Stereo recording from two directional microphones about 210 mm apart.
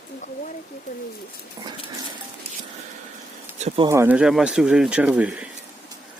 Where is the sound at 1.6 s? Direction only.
15° right (ahead or behind).